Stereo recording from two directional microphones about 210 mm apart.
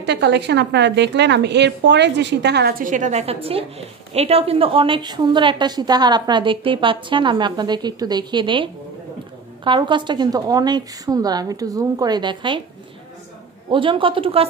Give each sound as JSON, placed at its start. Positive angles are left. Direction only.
{"t": 0.0, "sound": "a woman's voice", "side_deg": -55}
{"t": 9.7, "sound": "a woman's voice", "side_deg": -20}
{"t": 13.7, "sound": "a woman's voice", "side_deg": -25}